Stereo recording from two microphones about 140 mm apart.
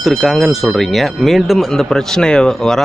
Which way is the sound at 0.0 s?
Centre (ahead or behind).